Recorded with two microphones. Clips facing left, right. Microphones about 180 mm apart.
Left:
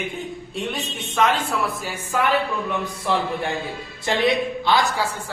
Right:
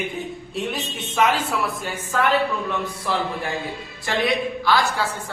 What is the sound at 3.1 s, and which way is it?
Speech, 20° left (ahead or behind).